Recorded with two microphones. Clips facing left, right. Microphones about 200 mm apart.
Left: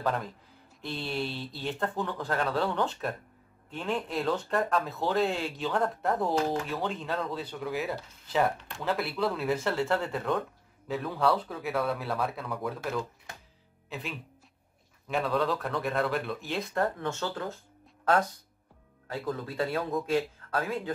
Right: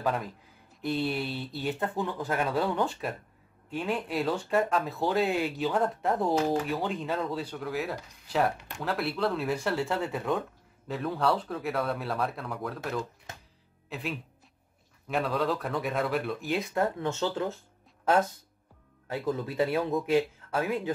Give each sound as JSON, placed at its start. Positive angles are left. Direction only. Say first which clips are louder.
{"t": 0.0, "sound": "speech", "louder": "right 1 dB", "side_deg": 0}
{"t": 2.9, "sound": "speech", "louder": "left 1 dB", "side_deg": 0}
{"t": 17.0, "sound": "speech", "louder": "right 3 dB", "side_deg": -20}
{"t": 19.0, "sound": "speech", "louder": "right 3 dB", "side_deg": -20}